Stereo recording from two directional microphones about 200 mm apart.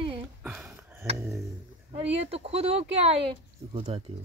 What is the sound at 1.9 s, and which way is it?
Speech, 30° right (ahead or behind).